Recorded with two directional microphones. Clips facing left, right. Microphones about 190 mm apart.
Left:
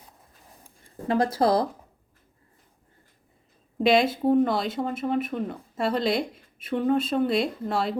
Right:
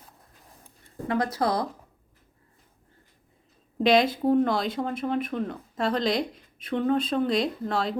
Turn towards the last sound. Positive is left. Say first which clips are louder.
# left 1 dB
turn(degrees=5)  # may be behind; listen again after turning